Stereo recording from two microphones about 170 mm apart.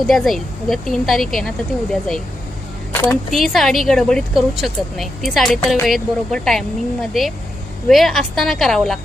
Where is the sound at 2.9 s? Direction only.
20° left (ahead or behind).